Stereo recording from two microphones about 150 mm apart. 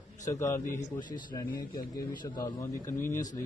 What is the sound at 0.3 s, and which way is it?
Speech, 15° left (ahead or behind).